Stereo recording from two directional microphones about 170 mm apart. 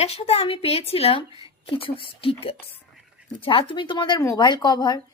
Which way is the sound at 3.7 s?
30° left (ahead or behind).